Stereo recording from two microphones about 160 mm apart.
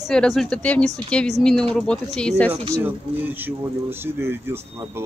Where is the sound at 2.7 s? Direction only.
10° right (ahead or behind).